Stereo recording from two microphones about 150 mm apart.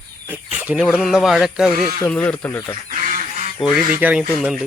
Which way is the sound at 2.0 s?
10° left (ahead or behind).